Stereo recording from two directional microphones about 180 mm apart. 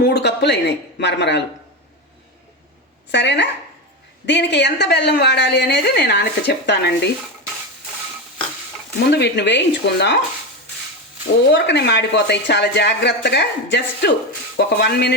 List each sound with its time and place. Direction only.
0.0 s a woman's voice: 70° left (ahead or behind)
3.1 s a woman's voice: 80° left
9.0 s a woman's voice: 70° left (ahead or behind)
11.5 s a woman's voice: 75° left (ahead or behind)
14.5 s speech: 60° left (ahead or behind)